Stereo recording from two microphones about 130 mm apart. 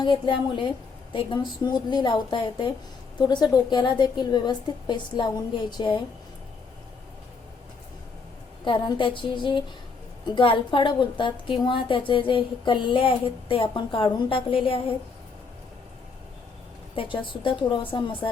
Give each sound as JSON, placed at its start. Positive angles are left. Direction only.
{"t": 0.0, "sound": "a woman's voice", "side_deg": 35}
{"t": 8.6, "sound": "a woman's voice", "side_deg": 40}
{"t": 16.9, "sound": "a woman's voice", "side_deg": 40}